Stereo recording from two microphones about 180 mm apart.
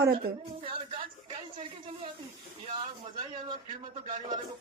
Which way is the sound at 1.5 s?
30° right (ahead or behind).